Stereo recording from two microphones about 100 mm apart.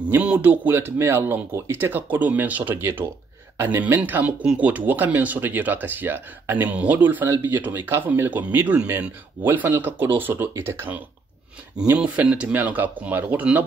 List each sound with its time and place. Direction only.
0.1 s speech: 15° right (ahead or behind)